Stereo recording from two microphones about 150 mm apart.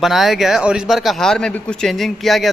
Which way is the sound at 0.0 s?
Centre (ahead or behind).